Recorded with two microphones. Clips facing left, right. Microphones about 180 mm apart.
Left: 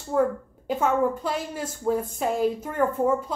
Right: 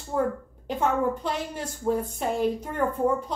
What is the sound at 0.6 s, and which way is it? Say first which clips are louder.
Speech: left 2 dB; 5° left (ahead or behind).